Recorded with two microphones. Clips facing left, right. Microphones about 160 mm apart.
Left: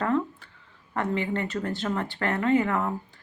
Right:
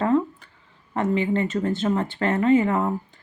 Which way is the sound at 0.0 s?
20° right (ahead or behind).